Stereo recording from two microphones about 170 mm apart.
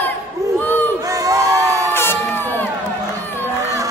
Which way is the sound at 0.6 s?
10° left (ahead or behind).